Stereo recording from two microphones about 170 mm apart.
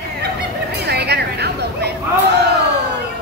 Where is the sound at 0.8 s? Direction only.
75° right (ahead or behind).